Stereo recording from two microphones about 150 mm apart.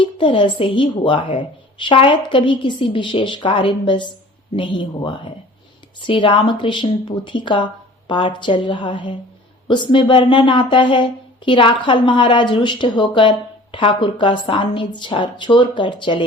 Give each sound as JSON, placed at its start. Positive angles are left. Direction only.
{"t": 0.0, "sound": "speech", "side_deg": 35}